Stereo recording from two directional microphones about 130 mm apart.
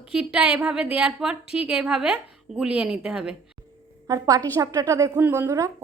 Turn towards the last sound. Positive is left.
turn(degrees=-20)  # may be behind; listen again after turning